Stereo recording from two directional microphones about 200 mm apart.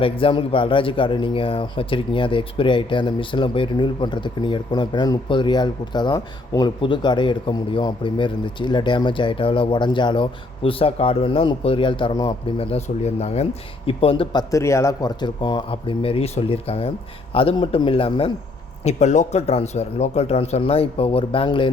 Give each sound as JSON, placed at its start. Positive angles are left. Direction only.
{"t": 0.0, "sound": "a man's voice", "side_deg": 25}
{"t": 12.5, "sound": "speech", "side_deg": 30}
{"t": 14.5, "sound": "a man's voice", "side_deg": 15}